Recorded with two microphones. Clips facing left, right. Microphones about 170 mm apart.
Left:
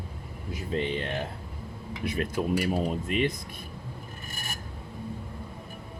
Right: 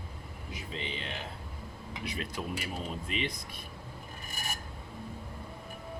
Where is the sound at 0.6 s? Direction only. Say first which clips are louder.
Left 11 dB; 50° left (ahead or behind).